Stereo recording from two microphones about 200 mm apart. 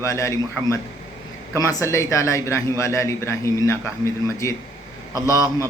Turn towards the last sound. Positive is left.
turn(degrees=15)  # may be behind; listen again after turning